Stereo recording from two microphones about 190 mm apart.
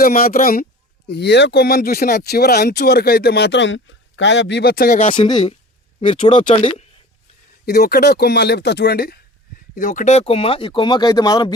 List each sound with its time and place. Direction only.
0.0 s speech: 50° left (ahead or behind)
5.1 s speech: 25° left (ahead or behind)
6.4 s speech: 35° left (ahead or behind)
7.6 s speech: 55° left (ahead or behind); by 11.5 s 20° left (ahead or behind)